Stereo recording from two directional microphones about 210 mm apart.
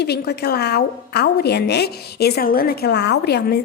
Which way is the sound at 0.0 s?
50° left (ahead or behind).